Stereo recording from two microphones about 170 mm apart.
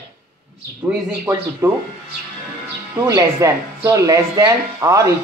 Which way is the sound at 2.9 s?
20° right (ahead or behind).